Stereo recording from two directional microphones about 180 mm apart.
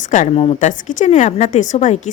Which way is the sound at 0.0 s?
45° left (ahead or behind).